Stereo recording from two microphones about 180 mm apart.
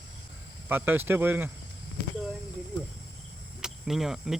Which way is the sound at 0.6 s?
10° right (ahead or behind).